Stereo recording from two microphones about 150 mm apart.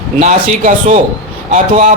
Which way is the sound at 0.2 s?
55° right (ahead or behind).